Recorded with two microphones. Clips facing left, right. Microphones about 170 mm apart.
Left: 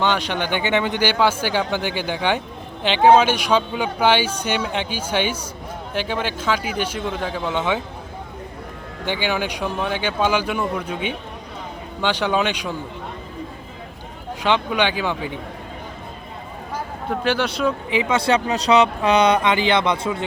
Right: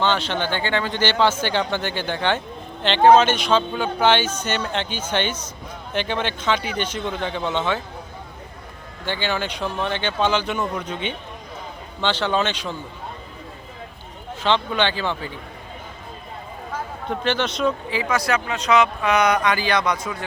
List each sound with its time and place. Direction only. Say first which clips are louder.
0.0 s speech: left 1 dB; 15° left (ahead or behind)
9.0 s speech: left 2 dB; 15° left (ahead or behind)
14.4 s speech: left 1 dB; 15° left (ahead or behind)
17.2 s speech: left 1 dB; 10° left (ahead or behind)
17.9 s speech: left 3 dB; 25° left (ahead or behind)